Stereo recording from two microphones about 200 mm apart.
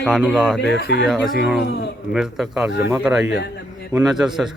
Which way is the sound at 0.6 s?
55° left (ahead or behind).